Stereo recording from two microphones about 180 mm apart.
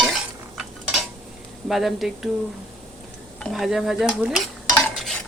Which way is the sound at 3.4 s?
Centre (ahead or behind).